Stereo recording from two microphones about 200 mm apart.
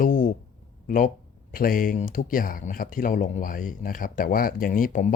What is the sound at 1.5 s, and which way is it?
Speech, 45° left (ahead or behind).